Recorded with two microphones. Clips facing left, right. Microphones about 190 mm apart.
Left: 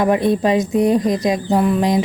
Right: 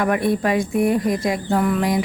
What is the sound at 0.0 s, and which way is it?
Speech, 20° left (ahead or behind).